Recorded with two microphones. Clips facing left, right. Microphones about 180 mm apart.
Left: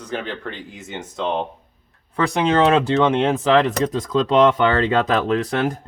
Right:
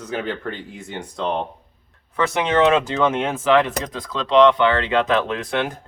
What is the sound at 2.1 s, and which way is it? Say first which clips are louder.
Speech: left 1 dB; 35° left (ahead or behind).